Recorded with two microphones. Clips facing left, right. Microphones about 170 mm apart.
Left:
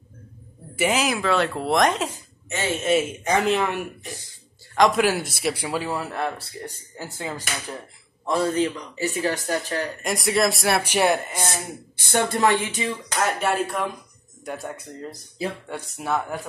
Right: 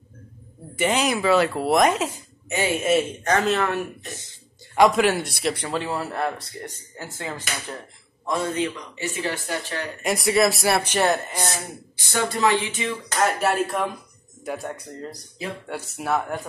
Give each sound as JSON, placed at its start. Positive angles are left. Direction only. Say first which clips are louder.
{"t": 0.7, "sound": "a man's voice", "louder": "even", "side_deg": 5}
{"t": 2.1, "sound": "a sound", "louder": "right 4 dB", "side_deg": -15}
{"t": 2.9, "sound": "speech", "louder": "left 1 dB", "side_deg": 5}
{"t": 4.7, "sound": "a man's voice", "louder": "right 1 dB", "side_deg": 0}
{"t": 6.6, "sound": "speech", "louder": "left 1 dB", "side_deg": 10}
{"t": 8.3, "sound": "speech", "louder": "left 3 dB", "side_deg": 30}
{"t": 10.0, "sound": "a man's voice", "louder": "right 3 dB", "side_deg": 0}
{"t": 10.8, "sound": "speech", "louder": "left 1 dB", "side_deg": 10}
{"t": 12.0, "sound": "speech", "louder": "left 2 dB", "side_deg": 55}
{"t": 12.9, "sound": "a man's voice", "louder": "right 5 dB", "side_deg": -5}
{"t": 15.7, "sound": "a man's voice", "louder": "right 5 dB", "side_deg": 0}